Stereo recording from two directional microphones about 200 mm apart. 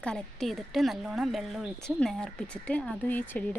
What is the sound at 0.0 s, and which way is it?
Speech, 5° left (ahead or behind).